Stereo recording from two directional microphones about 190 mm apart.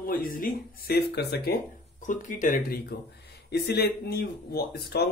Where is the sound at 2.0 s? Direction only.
40° left (ahead or behind).